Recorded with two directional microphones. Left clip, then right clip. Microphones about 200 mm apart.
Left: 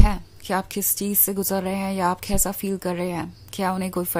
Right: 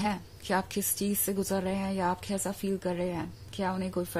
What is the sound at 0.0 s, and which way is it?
Speech, 20° left (ahead or behind).